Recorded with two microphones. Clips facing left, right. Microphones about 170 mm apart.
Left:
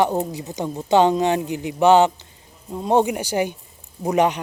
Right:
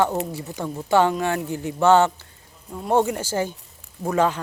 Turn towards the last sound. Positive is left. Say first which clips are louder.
# left 2 dB
turn(degrees=20)  # may be behind; listen again after turning